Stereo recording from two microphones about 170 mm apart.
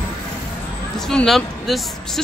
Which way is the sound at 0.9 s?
Centre (ahead or behind).